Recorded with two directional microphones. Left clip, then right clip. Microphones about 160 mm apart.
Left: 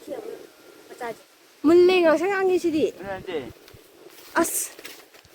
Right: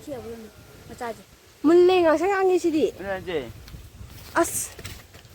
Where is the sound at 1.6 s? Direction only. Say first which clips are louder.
Even; 25° left (ahead or behind).